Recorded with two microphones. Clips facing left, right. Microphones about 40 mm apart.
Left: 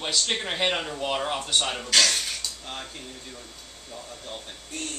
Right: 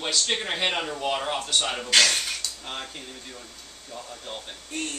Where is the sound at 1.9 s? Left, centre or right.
Centre.